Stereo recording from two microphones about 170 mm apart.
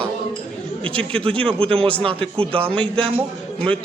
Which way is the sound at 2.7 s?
5° left (ahead or behind).